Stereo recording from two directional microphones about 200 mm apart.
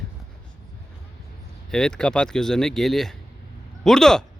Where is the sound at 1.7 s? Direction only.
5° left (ahead or behind).